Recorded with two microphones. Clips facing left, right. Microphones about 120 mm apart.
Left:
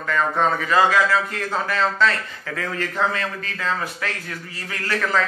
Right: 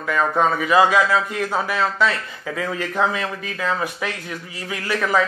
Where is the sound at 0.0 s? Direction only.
10° right (ahead or behind).